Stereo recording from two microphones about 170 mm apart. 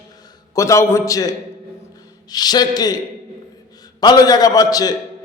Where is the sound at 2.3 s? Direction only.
25° left (ahead or behind).